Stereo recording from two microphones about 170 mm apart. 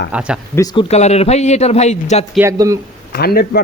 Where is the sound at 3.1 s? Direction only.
65° left (ahead or behind).